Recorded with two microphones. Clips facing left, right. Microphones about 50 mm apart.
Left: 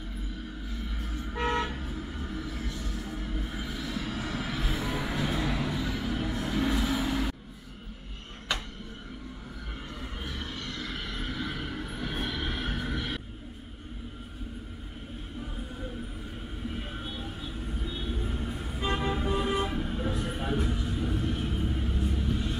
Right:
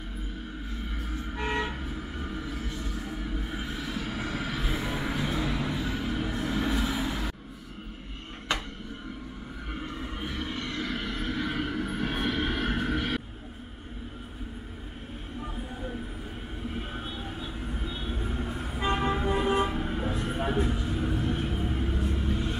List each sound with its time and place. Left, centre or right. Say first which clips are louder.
1.7 s music: right 1 dB; right
4.6 s music: right 1 dB; centre
5.1 s a sound: even; centre
5.7 s vehicle: right 1 dB; right
7.0 s a sound: left 2 dB; right
9.8 s a sound: right 6 dB; centre; by 11.1 s right
11.1 s vehicle: right 4 dB; right
11.8 s music: right 5 dB; right
17.8 s vehicle: even; centre
18.6 s toot: right 3 dB; right
20.2 s a sound: right 3 dB; right
21.1 s vehicle: right 2 dB; right